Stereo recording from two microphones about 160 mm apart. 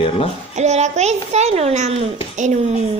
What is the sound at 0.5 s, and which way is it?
A child's voice, 45° right (ahead or behind).